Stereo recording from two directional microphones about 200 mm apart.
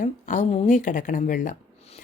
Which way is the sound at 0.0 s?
35° left (ahead or behind).